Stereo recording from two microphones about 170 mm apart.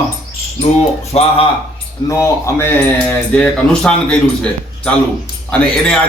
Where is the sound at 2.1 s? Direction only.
15° left (ahead or behind).